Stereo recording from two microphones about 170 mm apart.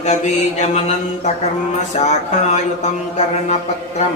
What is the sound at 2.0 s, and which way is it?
Speech, 40° left (ahead or behind).